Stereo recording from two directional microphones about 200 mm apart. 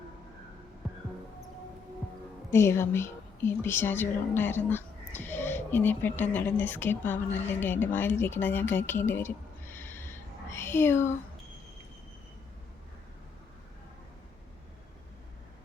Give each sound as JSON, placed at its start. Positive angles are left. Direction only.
{"t": 2.5, "sound": "a woman's voice", "side_deg": 15}